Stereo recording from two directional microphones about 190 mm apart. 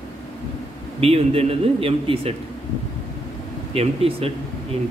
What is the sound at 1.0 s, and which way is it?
Speech, 30° right (ahead or behind).